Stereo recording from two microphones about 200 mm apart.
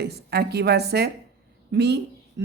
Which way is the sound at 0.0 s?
55° right (ahead or behind).